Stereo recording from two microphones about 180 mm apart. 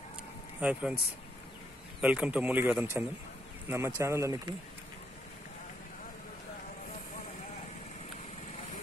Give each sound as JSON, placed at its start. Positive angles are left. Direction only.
{"t": 0.6, "sound": "a man's voice", "side_deg": -5}
{"t": 2.0, "sound": "a man's voice", "side_deg": -5}